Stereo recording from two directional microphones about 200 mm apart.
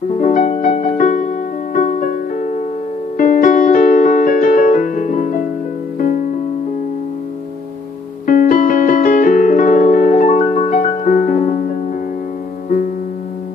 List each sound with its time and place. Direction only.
0.1 s music: 40° left (ahead or behind)
8.3 s piano: 45° left (ahead or behind)